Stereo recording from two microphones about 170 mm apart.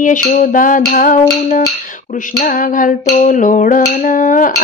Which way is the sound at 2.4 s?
50° left (ahead or behind).